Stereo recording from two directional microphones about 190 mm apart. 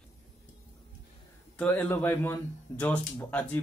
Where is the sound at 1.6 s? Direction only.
10° left (ahead or behind).